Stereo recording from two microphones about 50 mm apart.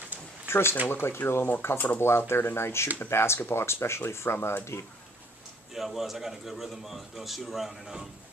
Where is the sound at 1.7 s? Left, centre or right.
Left.